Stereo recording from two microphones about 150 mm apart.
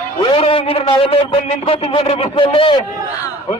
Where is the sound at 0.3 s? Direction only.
40° left (ahead or behind).